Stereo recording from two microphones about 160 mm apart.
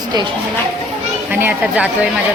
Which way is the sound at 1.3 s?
10° right (ahead or behind).